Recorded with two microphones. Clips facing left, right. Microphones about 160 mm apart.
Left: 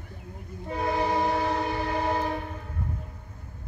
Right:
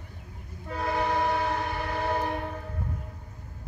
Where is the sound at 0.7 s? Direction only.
20° left (ahead or behind).